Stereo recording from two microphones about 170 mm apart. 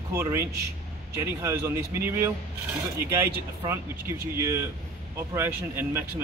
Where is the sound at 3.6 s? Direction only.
15° right (ahead or behind).